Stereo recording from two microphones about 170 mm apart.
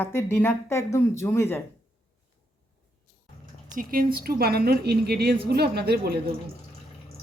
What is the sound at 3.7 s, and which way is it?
A woman's voice, 55° right (ahead or behind).